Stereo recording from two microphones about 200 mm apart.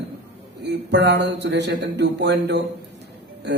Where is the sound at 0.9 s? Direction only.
60° right (ahead or behind).